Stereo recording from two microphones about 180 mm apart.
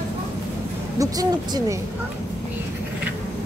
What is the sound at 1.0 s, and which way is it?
Speech, 20° right (ahead or behind).